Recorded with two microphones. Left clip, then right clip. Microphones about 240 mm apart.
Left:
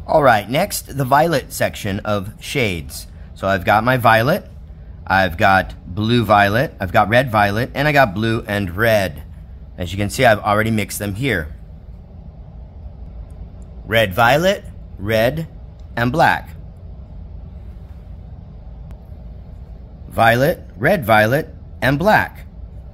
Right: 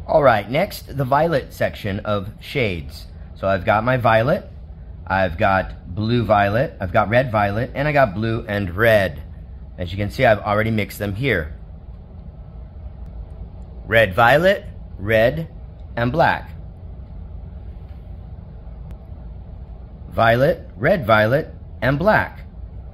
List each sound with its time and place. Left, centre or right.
0.0 s speech: centre
9.8 s speech: centre
13.8 s speech: centre
20.2 s speech: centre